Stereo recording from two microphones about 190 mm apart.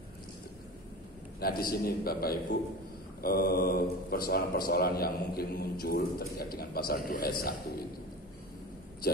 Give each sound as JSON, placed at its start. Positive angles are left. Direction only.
{"t": 1.4, "sound": "speech", "side_deg": 50}